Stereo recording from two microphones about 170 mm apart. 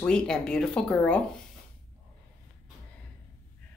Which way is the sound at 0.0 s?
5° left (ahead or behind).